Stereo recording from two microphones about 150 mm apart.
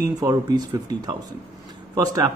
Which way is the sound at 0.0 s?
25° right (ahead or behind).